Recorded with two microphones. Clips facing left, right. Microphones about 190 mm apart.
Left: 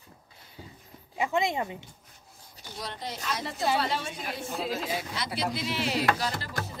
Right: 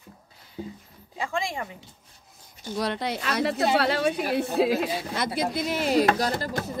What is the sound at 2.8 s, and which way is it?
A woman's voice, 70° right (ahead or behind).